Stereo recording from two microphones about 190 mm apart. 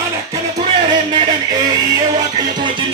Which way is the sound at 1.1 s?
20° right (ahead or behind).